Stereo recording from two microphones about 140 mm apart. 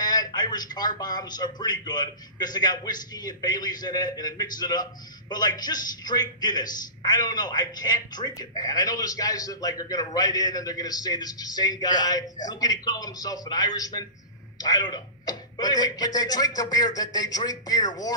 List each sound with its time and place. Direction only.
0.0 s a man's voice: 30° left (ahead or behind)